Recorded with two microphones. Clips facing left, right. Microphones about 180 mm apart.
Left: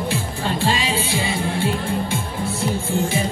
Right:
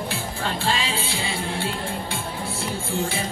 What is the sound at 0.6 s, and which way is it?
Music, 15° left (ahead or behind).